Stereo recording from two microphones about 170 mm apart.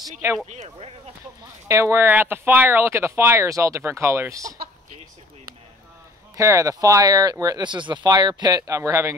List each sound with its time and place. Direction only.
0.5 s speech: 40° right (ahead or behind)
1.7 s speech: 15° right (ahead or behind)
6.3 s speech: 15° right (ahead or behind)